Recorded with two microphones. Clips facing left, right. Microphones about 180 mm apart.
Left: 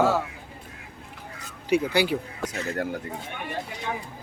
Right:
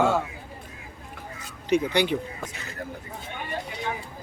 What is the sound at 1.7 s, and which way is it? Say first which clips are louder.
Speech: even; 5° left (ahead or behind).